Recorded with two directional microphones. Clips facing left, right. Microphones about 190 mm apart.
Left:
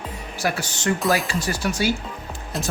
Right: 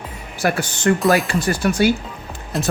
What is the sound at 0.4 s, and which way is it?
Speech, 55° right (ahead or behind).